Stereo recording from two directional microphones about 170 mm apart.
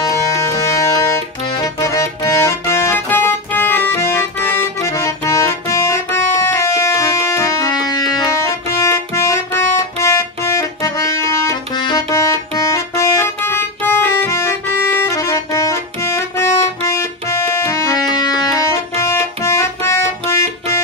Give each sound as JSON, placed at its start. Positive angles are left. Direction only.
{"t": 0.4, "sound": "accordion", "side_deg": 20}